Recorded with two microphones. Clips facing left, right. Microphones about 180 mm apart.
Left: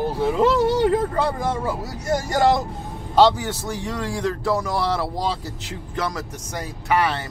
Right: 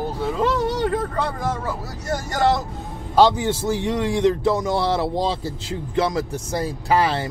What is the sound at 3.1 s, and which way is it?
A man's voice, 20° right (ahead or behind).